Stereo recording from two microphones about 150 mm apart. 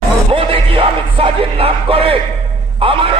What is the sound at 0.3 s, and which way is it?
Music, 35° right (ahead or behind).